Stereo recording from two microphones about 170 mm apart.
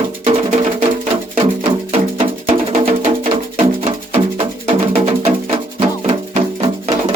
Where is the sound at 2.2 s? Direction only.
35° right (ahead or behind).